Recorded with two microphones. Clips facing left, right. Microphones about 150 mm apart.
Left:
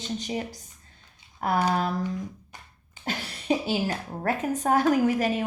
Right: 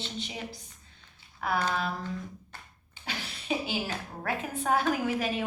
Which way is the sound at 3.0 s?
45° left (ahead or behind).